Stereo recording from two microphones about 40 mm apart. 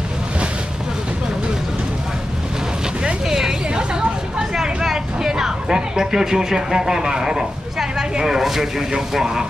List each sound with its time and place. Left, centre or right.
3.0 s vehicle: centre
4.4 s a sound: centre
8.2 s speech: centre